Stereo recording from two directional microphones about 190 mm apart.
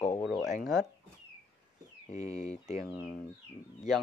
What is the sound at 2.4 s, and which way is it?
Speech, 35° left (ahead or behind).